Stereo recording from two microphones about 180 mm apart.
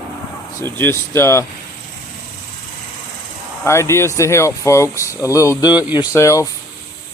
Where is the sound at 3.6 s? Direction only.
15° left (ahead or behind).